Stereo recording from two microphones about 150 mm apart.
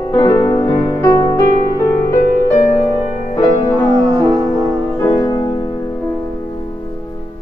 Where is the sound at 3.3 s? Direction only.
25° left (ahead or behind).